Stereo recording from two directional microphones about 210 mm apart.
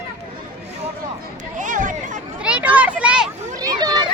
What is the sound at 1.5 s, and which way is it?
Chatter, 35° right (ahead or behind).